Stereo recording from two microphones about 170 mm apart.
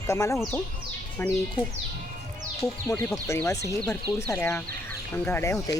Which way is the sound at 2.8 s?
10° left (ahead or behind).